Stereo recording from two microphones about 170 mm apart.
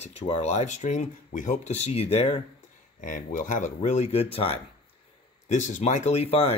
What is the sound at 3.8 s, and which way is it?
Speech, 40° left (ahead or behind).